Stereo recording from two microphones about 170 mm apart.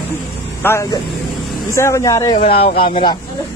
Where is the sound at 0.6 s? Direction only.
15° left (ahead or behind).